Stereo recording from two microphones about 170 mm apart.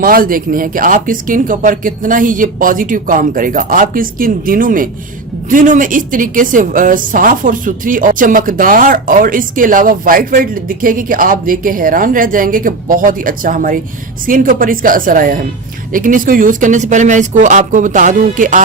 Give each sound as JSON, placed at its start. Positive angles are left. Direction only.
{"t": 0.0, "sound": "a woman's voice", "side_deg": -55}